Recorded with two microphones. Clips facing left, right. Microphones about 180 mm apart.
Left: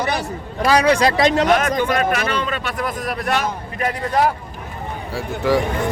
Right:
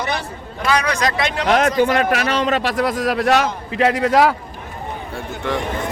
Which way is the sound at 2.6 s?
90° right.